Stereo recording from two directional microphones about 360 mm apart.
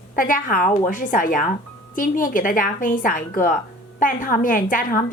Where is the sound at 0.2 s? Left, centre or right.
Left.